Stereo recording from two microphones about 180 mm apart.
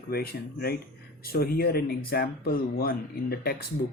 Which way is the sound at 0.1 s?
60° left (ahead or behind).